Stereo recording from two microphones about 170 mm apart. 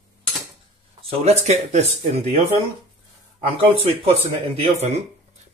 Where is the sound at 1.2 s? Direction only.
40° right (ahead or behind).